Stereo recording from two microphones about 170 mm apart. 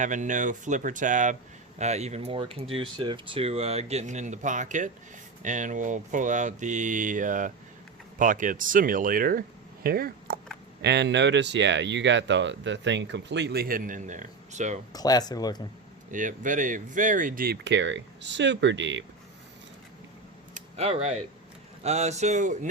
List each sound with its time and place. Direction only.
0.0 s speech: 45° right (ahead or behind)
9.8 s a sound: 60° right (ahead or behind)
10.8 s speech: 85° right; by 14.8 s 45° right (ahead or behind)
14.9 s speech: 20° left (ahead or behind)
16.1 s speech: 50° right (ahead or behind); by 19.0 s 90° right
20.5 s a sound: 35° right (ahead or behind)
21.8 s speech: 40° right (ahead or behind)